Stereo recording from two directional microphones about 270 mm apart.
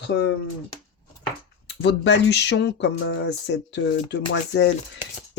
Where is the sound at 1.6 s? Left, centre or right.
Left.